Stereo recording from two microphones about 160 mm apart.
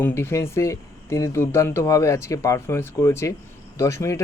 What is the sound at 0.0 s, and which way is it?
A man's voice, 15° left (ahead or behind).